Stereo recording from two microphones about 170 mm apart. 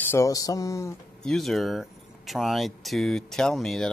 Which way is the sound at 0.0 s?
15° left (ahead or behind).